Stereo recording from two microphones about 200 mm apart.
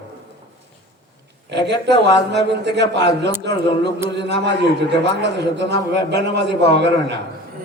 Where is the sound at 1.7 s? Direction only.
60° right (ahead or behind).